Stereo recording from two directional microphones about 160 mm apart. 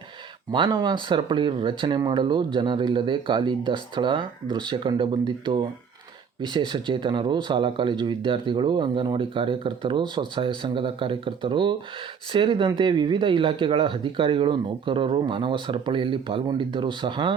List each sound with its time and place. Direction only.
0.5 s speech: 25° right (ahead or behind)